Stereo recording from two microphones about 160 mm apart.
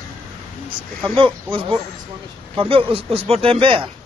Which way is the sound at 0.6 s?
30° right (ahead or behind).